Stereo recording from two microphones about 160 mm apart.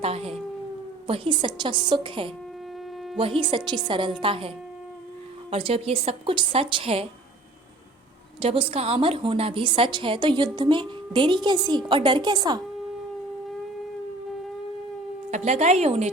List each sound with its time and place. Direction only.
0.0 s a woman's voice: 40° right (ahead or behind)
8.4 s a woman's voice: 35° right (ahead or behind)
15.3 s a woman's voice: 45° right (ahead or behind)